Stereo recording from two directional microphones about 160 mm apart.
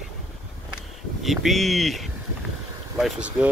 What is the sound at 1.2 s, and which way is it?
Speech, centre (ahead or behind).